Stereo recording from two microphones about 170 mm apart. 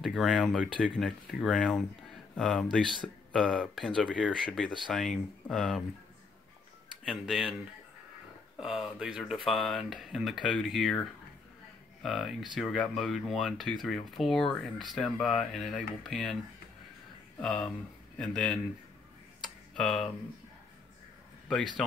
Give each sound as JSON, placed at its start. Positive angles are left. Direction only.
{"t": 0.0, "sound": "speech", "side_deg": 0}
{"t": 7.1, "sound": "speech", "side_deg": 0}
{"t": 8.5, "sound": "speech", "side_deg": 0}
{"t": 12.0, "sound": "speech", "side_deg": 0}
{"t": 17.4, "sound": "speech", "side_deg": 5}
{"t": 19.4, "sound": "tick-tock", "side_deg": 5}
{"t": 21.5, "sound": "speech", "side_deg": 0}